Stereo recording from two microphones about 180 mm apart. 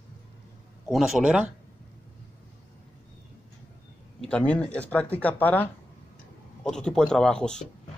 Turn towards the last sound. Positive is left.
turn(degrees=5)  # may be behind; listen again after turning